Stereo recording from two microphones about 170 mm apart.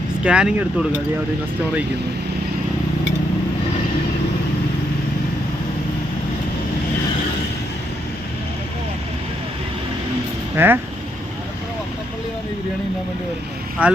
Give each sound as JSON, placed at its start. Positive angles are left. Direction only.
{"t": 0.2, "sound": "speech", "side_deg": -5}
{"t": 10.6, "sound": "speech", "side_deg": -15}
{"t": 13.8, "sound": "speech", "side_deg": -10}